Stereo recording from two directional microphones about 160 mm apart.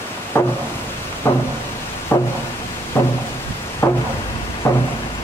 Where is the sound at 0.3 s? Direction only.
15° left (ahead or behind).